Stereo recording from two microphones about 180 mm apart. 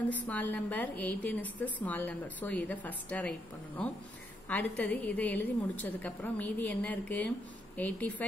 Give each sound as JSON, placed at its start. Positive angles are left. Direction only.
{"t": 0.3, "sound": "a woman's voice", "side_deg": 10}